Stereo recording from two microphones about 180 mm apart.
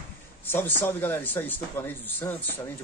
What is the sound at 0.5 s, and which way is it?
A man's voice, 10° left (ahead or behind).